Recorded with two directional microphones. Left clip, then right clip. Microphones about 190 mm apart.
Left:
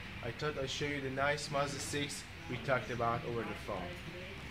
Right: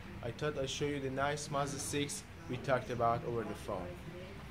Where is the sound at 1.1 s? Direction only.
25° right (ahead or behind).